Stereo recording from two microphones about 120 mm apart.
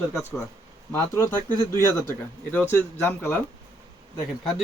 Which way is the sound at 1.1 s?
20° left (ahead or behind).